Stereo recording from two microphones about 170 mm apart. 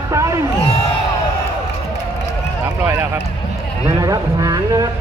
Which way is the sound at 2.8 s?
15° right (ahead or behind).